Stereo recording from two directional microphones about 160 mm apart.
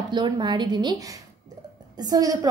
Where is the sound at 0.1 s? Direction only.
30° right (ahead or behind).